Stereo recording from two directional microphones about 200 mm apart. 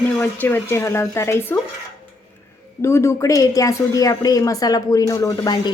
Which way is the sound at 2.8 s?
15° left (ahead or behind).